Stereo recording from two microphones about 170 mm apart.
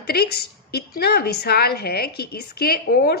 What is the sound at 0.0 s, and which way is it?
A woman's voice, 65° left (ahead or behind).